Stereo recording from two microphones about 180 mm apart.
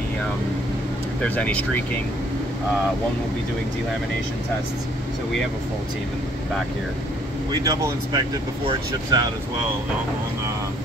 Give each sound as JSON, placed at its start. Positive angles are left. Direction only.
{"t": 1.2, "sound": "speech", "side_deg": 10}
{"t": 7.5, "sound": "speech", "side_deg": -20}